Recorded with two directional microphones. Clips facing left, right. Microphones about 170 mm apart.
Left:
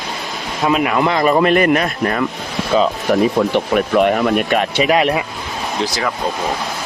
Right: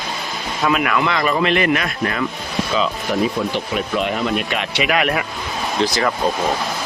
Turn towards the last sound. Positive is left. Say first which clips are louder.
# right 2 dB
turn(degrees=0)  # may be behind; listen again after turning